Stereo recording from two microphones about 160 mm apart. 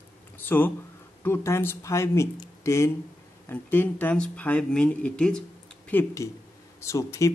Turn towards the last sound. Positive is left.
turn(degrees=20)  # may be behind; listen again after turning